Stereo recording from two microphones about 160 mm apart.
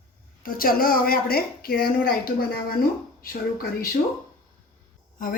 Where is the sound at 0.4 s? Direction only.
65° left (ahead or behind).